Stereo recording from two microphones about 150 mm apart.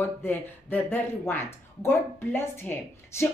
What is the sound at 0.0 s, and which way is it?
Speech, 15° left (ahead or behind).